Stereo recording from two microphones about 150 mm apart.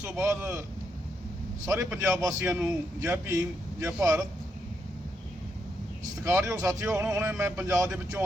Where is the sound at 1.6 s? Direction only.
15° right (ahead or behind).